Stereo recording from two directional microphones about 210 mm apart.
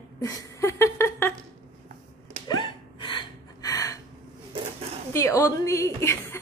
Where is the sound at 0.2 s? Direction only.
15° left (ahead or behind).